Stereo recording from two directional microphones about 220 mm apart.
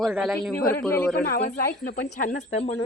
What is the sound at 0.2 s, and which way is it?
Speech, centre (ahead or behind).